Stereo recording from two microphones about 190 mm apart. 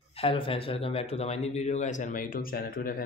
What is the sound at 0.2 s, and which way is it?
Speech, 30° left (ahead or behind).